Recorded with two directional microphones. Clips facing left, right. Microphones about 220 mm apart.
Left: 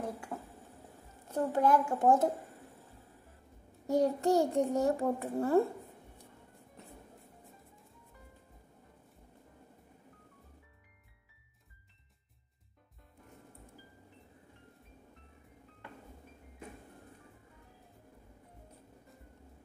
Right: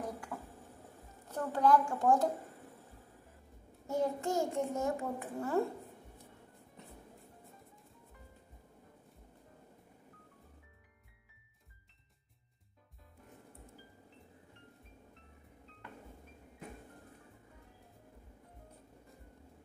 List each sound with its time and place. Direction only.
0.3 s a sound: 25° left (ahead or behind)
1.3 s a woman's voice: 25° left (ahead or behind)
3.8 s a child's voice: 35° left (ahead or behind)